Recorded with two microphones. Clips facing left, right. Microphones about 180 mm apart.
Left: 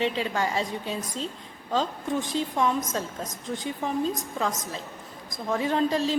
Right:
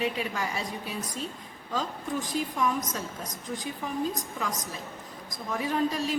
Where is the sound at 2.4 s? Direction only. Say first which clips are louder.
Left 2 dB; 25° left (ahead or behind).